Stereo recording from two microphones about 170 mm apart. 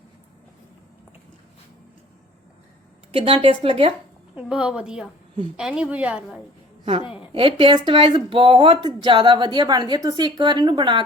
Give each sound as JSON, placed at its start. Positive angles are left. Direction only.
{"t": 3.1, "sound": "a woman's voice", "side_deg": -30}
{"t": 4.4, "sound": "a woman's voice", "side_deg": -5}
{"t": 7.3, "sound": "speech", "side_deg": -30}